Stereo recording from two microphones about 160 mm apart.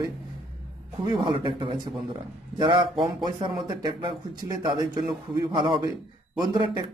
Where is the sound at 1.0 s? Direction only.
30° right (ahead or behind).